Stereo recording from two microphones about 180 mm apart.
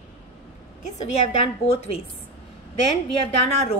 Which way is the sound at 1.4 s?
35° left (ahead or behind).